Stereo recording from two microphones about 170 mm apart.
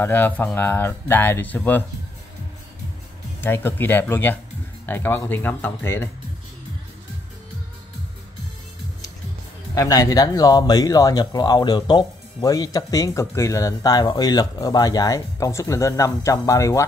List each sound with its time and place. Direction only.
0.0 s speech: 10° left (ahead or behind)
3.3 s speech: 15° left (ahead or behind)
9.8 s speech: 20° left (ahead or behind)